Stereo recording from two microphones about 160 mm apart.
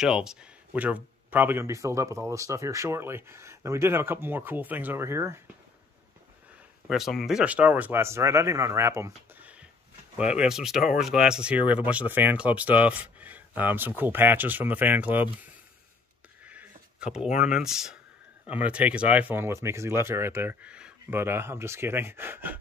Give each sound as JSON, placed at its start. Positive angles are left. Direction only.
{"t": 0.0, "sound": "speech", "side_deg": -5}
{"t": 6.9, "sound": "speech", "side_deg": 0}
{"t": 16.4, "sound": "a sound", "side_deg": -5}
{"t": 17.5, "sound": "speech", "side_deg": -5}